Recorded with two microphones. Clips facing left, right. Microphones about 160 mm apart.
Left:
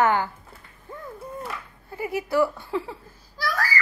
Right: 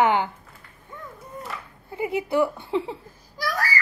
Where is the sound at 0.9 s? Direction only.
30° left (ahead or behind).